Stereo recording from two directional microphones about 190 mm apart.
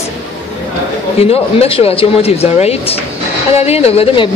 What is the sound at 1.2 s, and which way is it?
A man's voice, 30° left (ahead or behind).